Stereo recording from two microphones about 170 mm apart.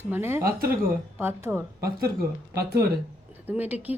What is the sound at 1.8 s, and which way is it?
Speech, 65° right (ahead or behind).